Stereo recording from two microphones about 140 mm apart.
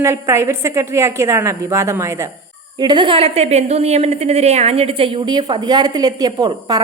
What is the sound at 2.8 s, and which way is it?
A woman's voice, 35° right (ahead or behind).